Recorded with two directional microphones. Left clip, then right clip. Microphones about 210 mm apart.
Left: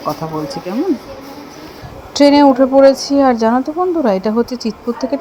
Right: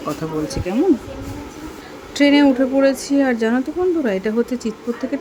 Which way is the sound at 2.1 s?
15° left (ahead or behind).